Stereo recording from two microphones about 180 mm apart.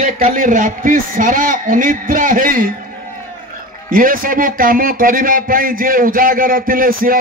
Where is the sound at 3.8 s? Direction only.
50° right (ahead or behind).